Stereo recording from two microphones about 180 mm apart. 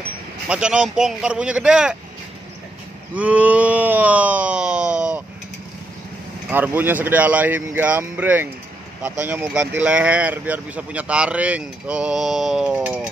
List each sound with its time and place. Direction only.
0.5 s speech: 5° right (ahead or behind)
3.2 s a sound: 10° right (ahead or behind)
6.5 s speech: 10° right (ahead or behind)